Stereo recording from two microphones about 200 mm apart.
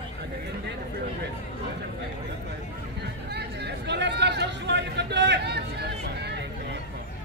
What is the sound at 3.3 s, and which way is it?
Chatter, 55° right (ahead or behind).